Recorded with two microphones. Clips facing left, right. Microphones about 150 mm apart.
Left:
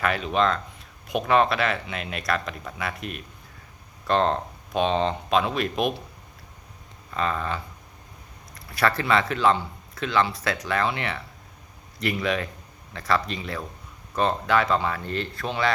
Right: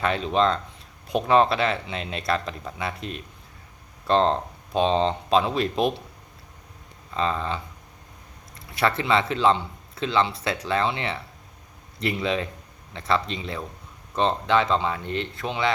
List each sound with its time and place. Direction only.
0.0 s speech: 25° right (ahead or behind)
7.1 s speech: 25° right (ahead or behind)